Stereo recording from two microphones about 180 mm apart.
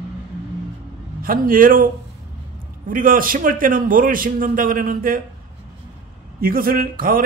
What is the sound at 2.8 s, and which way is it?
A man's voice, 50° right (ahead or behind).